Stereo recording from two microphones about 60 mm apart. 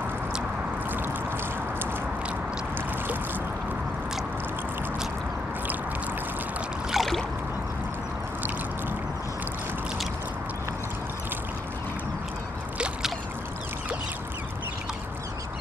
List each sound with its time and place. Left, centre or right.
0.8 s boat: right
6.9 s boat: centre
12.7 s a sound: centre